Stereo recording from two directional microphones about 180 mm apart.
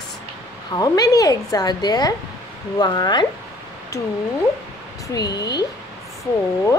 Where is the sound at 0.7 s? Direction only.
20° left (ahead or behind).